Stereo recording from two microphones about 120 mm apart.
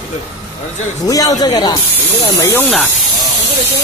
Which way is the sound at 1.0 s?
30° left (ahead or behind).